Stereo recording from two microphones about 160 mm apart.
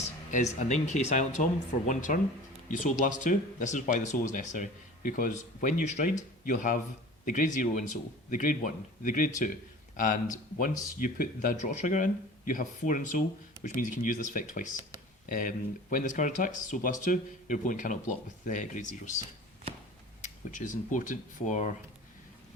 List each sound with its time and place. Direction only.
0.3 s a man's voice: 50° left (ahead or behind)
20.2 s speech: 50° left (ahead or behind)